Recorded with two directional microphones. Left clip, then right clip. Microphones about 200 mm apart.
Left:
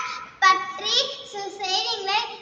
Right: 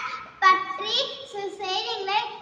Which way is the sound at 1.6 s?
10° left (ahead or behind).